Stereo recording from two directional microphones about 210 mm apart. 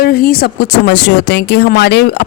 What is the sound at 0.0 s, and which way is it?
Speech, 45° left (ahead or behind).